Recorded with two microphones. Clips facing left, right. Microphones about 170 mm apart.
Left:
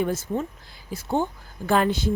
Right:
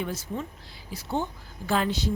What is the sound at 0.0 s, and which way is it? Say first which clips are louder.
A woman's voice: left 7 dB; 50° left (ahead or behind).